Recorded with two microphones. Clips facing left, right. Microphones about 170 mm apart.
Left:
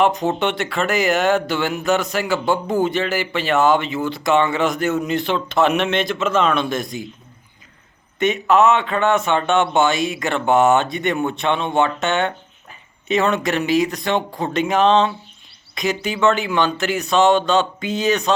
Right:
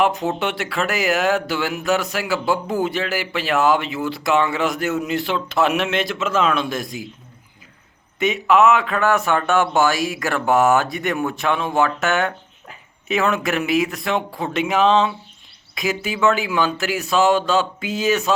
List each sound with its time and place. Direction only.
0.0 s a man's voice: centre (ahead or behind)
8.2 s a man's voice: centre (ahead or behind)
9.2 s speech: 20° left (ahead or behind)
10.5 s a man's voice: centre (ahead or behind)